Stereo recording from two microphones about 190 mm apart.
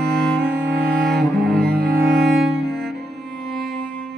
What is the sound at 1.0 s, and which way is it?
Cello, centre (ahead or behind).